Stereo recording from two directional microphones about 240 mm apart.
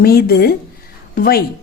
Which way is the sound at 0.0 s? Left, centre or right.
Left.